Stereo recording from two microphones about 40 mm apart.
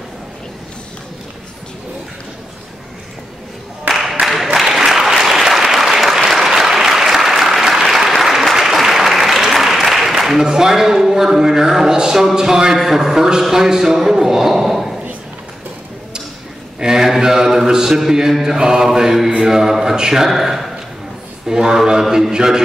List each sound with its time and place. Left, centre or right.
4.1 s music: centre
4.6 s applause: centre
10.4 s speech: centre
16.8 s a man's voice: centre